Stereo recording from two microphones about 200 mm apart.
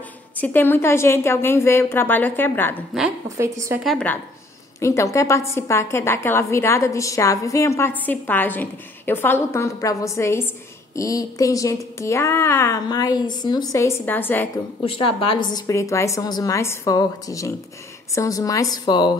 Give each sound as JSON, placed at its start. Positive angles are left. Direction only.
{"t": 0.4, "sound": "a woman's voice", "side_deg": 10}
{"t": 3.3, "sound": "a woman's voice", "side_deg": -15}
{"t": 3.8, "sound": "a woman's voice", "side_deg": 5}
{"t": 4.7, "sound": "a woman's voice", "side_deg": 15}
{"t": 14.8, "sound": "a woman's voice", "side_deg": 25}